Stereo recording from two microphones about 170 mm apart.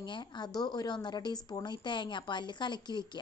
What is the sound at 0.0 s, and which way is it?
A woman's voice, 25° left (ahead or behind).